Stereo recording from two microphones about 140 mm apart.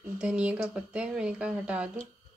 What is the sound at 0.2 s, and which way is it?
Speech, 5° right (ahead or behind).